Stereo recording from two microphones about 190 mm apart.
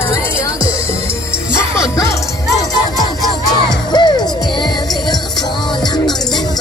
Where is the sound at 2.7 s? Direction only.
20° left (ahead or behind).